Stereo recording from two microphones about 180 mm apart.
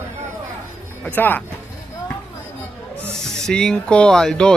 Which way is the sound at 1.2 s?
10° left (ahead or behind).